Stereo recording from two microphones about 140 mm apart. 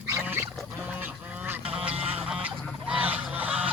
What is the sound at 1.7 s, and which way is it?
Duck, 10° right (ahead or behind).